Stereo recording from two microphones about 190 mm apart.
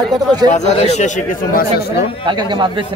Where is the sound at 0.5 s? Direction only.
35° left (ahead or behind).